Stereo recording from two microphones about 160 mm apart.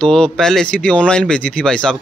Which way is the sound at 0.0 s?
5° left (ahead or behind).